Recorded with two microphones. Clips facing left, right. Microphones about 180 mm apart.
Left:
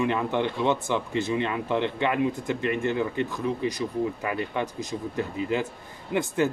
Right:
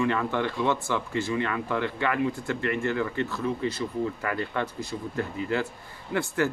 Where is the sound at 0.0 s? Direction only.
20° left (ahead or behind).